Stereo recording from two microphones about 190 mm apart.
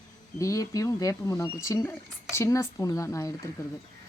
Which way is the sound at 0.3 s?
15° left (ahead or behind).